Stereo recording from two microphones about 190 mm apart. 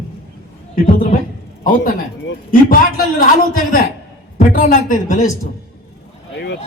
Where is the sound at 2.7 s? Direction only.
50° left (ahead or behind).